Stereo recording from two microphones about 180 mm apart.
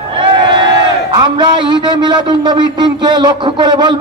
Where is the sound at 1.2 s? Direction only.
25° right (ahead or behind).